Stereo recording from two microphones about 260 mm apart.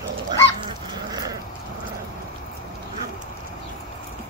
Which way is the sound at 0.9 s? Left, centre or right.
Centre.